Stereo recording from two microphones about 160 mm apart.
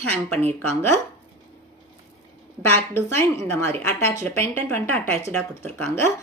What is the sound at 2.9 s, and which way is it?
Speech, 15° left (ahead or behind).